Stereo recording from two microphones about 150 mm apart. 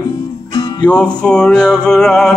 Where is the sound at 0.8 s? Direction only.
5° left (ahead or behind).